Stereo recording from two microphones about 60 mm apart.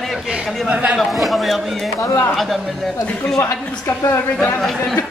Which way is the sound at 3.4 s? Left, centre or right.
Left.